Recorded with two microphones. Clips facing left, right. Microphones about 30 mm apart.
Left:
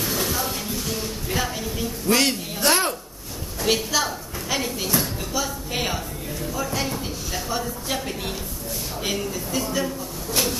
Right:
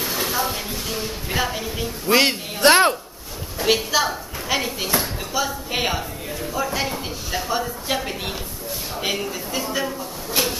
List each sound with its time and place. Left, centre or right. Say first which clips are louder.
0.0 s a woman's voice: right 2 dB; centre; by 3.0 s right
3.5 s a woman's voice: right 3 dB; centre